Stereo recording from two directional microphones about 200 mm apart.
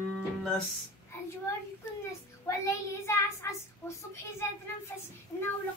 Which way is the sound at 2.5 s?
15° left (ahead or behind).